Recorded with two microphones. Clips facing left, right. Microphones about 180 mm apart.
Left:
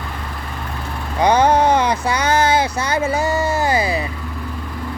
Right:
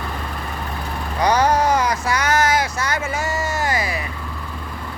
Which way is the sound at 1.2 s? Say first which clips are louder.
Left 3 dB; 25° left (ahead or behind).